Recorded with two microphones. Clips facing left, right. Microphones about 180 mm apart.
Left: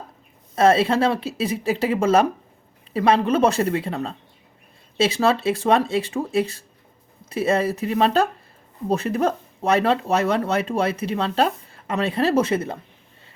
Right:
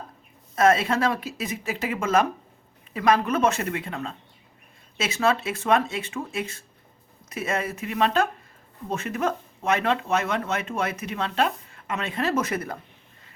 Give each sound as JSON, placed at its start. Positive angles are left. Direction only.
{"t": 0.5, "sound": "speech", "side_deg": 30}